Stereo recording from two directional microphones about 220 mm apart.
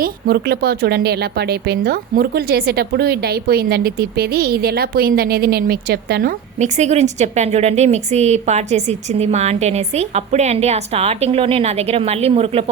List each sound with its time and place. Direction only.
0.0 s speech: 45° right (ahead or behind)
6.6 s a woman's voice: 30° right (ahead or behind)